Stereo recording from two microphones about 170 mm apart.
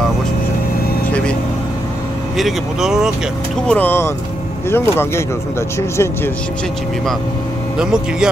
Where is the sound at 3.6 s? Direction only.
10° left (ahead or behind).